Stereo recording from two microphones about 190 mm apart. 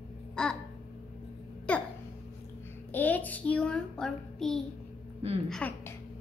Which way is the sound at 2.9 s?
10° left (ahead or behind).